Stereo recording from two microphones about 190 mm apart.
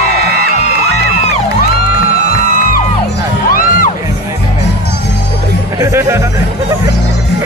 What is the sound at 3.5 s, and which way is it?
Music, 45° left (ahead or behind).